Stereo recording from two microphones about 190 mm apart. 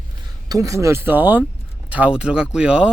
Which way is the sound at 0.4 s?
20° right (ahead or behind).